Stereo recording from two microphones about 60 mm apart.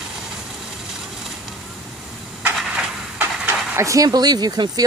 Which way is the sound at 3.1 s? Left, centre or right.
Right.